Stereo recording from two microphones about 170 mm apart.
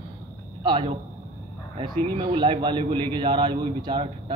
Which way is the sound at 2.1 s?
30° right (ahead or behind).